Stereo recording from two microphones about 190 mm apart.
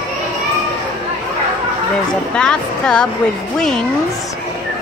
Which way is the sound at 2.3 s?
5° left (ahead or behind).